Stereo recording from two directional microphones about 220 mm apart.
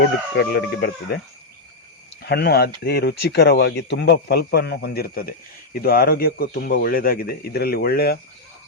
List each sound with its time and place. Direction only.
0.0 s speech: 50° left (ahead or behind)
2.2 s speech: 50° left (ahead or behind)